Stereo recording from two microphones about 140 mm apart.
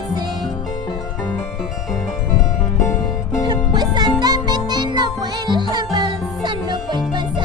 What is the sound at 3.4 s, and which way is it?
Music, 30° right (ahead or behind).